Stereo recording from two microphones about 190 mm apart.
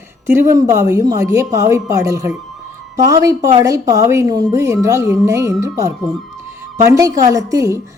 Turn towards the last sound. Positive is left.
turn(degrees=-15)  # may be behind; listen again after turning